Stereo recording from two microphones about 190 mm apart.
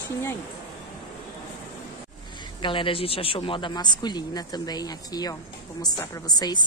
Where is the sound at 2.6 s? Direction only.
25° left (ahead or behind).